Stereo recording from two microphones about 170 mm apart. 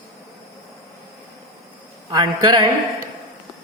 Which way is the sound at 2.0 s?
30° right (ahead or behind).